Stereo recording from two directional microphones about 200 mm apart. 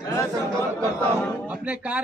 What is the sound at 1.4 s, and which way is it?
Speech, 10° right (ahead or behind).